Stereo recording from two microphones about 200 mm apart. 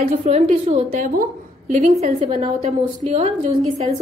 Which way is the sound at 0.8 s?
45° right (ahead or behind).